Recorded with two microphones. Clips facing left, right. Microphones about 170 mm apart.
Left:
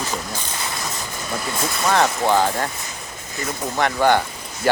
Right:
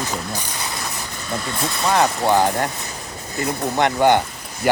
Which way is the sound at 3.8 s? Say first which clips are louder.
Right 1 dB; 20° right (ahead or behind).